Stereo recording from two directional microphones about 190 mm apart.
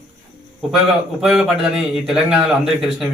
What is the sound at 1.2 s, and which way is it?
A man's voice, centre (ahead or behind).